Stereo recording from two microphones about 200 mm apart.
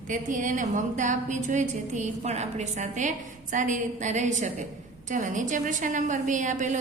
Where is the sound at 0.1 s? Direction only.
40° right (ahead or behind).